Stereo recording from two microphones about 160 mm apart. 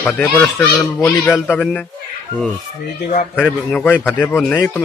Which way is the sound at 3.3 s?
10° left (ahead or behind).